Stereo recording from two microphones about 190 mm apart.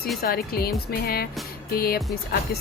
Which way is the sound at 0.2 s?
55° left (ahead or behind).